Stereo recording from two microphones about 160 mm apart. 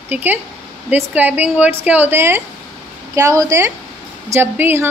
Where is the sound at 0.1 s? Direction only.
10° right (ahead or behind).